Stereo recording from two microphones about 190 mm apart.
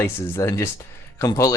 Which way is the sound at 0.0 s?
15° left (ahead or behind).